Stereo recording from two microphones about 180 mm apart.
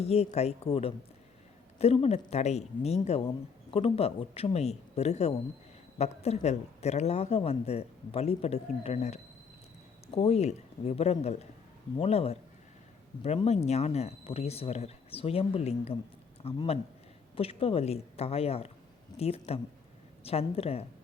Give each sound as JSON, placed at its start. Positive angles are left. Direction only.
{"t": 0.0, "sound": "speech", "side_deg": 35}